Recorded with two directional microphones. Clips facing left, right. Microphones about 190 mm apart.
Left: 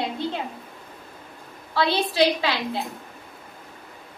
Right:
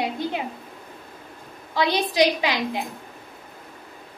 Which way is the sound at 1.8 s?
15° right (ahead or behind).